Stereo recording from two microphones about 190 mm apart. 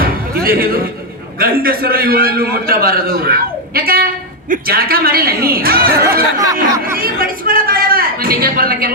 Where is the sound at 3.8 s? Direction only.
50° right (ahead or behind).